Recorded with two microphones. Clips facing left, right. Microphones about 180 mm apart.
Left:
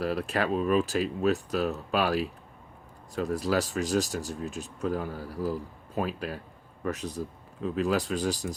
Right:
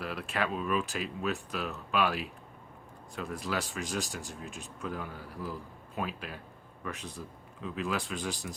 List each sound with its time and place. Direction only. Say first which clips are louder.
0.0 s speech: left 6 dB; 40° left (ahead or behind)